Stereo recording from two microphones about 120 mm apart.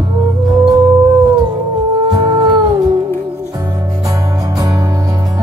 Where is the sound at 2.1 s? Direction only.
30° right (ahead or behind).